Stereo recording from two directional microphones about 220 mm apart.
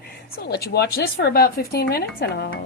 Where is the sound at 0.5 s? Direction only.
50° left (ahead or behind).